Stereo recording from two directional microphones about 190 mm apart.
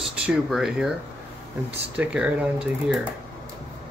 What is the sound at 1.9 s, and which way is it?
Speech, 5° right (ahead or behind).